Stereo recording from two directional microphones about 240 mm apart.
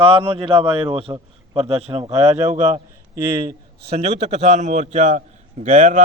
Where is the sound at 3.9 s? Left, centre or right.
Right.